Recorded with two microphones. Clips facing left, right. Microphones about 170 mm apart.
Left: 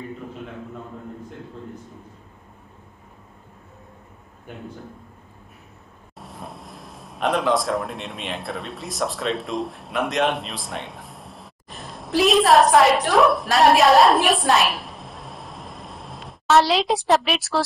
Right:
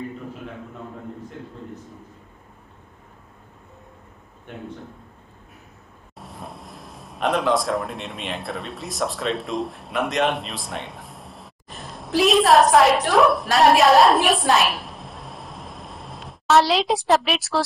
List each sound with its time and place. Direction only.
6.1 s a man's voice: centre (ahead or behind)